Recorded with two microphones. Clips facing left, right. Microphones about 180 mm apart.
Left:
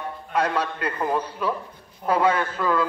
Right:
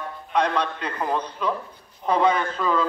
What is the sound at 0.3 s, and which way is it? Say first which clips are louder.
A man's voice: right 1 dB; 5° left (ahead or behind).